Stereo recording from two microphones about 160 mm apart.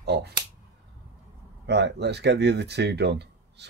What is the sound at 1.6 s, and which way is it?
Speech, 90° right.